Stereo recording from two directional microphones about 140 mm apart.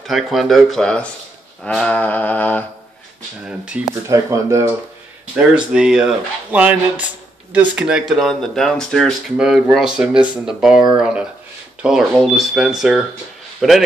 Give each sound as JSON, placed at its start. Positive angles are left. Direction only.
{"t": 0.0, "sound": "speech", "side_deg": 0}
{"t": 1.6, "sound": "humming", "side_deg": 5}
{"t": 3.4, "sound": "speech", "side_deg": -5}
{"t": 3.9, "sound": "speech", "side_deg": -20}
{"t": 5.3, "sound": "a man's voice", "side_deg": -5}